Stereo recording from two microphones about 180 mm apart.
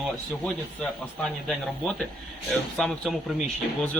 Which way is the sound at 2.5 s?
Centre (ahead or behind).